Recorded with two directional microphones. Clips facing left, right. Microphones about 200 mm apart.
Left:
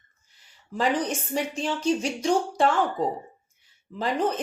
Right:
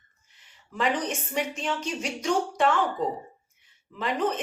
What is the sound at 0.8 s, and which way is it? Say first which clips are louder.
Speech: left 2 dB; 35° left (ahead or behind).